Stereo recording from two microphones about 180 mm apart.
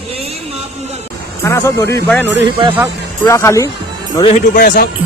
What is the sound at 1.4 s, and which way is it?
Speech, 15° left (ahead or behind).